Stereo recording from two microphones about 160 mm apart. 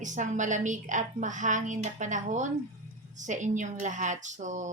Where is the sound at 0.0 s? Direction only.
50° right (ahead or behind).